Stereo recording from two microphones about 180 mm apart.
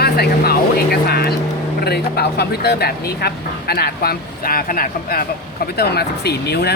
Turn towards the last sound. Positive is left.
turn(degrees=65)  # may be behind; listen again after turning